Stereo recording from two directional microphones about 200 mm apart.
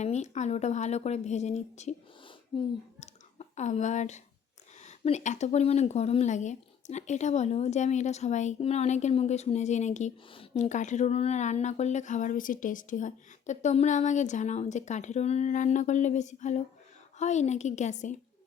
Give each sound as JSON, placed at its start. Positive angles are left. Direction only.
{"t": 0.0, "sound": "speech", "side_deg": 35}
{"t": 3.0, "sound": "a sound", "side_deg": 35}
{"t": 4.8, "sound": "speech", "side_deg": 35}